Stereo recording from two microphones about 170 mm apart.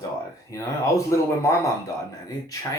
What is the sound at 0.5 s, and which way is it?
Speech, 20° left (ahead or behind).